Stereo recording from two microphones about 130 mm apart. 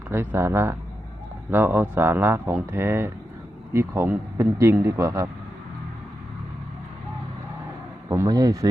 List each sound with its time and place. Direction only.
0.1 s a man's voice: 20° right (ahead or behind)
8.1 s a man's voice: 25° right (ahead or behind)